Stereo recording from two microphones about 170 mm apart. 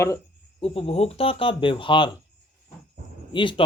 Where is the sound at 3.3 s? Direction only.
30° left (ahead or behind).